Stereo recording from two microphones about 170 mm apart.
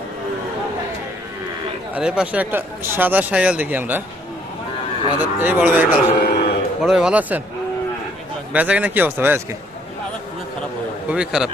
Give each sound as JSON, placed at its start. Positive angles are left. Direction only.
{"t": 2.0, "sound": "speech", "side_deg": -5}
{"t": 5.2, "sound": "speech", "side_deg": -10}
{"t": 6.1, "sound": "a sound", "side_deg": 55}
{"t": 6.8, "sound": "speech", "side_deg": -5}
{"t": 8.5, "sound": "speech", "side_deg": -10}
{"t": 11.1, "sound": "speech", "side_deg": -5}